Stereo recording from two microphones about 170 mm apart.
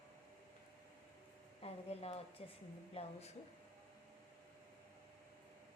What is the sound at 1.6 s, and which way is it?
Speech, 35° left (ahead or behind).